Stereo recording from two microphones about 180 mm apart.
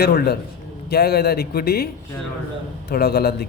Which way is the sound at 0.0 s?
60° left (ahead or behind).